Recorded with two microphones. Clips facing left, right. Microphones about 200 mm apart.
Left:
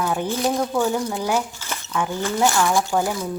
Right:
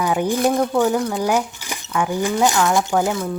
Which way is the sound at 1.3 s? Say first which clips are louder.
Right 2 dB; 15° right (ahead or behind).